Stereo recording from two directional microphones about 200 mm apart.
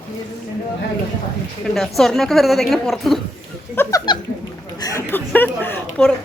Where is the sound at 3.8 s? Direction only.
15° left (ahead or behind).